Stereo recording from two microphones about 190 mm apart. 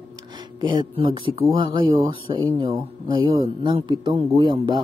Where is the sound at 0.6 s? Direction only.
25° right (ahead or behind).